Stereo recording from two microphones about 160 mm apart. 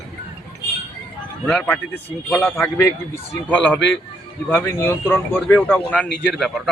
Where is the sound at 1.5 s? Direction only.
5° left (ahead or behind).